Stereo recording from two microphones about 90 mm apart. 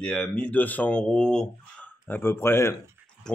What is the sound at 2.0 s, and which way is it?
Speech, 25° left (ahead or behind).